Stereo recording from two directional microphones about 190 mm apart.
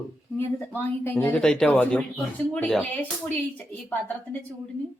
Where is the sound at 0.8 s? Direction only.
10° left (ahead or behind).